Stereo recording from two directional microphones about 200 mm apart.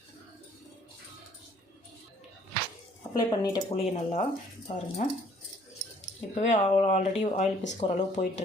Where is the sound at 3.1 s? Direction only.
20° left (ahead or behind).